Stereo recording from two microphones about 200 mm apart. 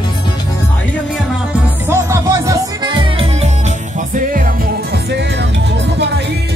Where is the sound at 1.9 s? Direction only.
15° right (ahead or behind).